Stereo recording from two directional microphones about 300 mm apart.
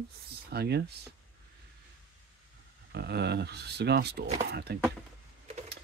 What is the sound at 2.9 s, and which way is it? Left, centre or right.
Speech, right.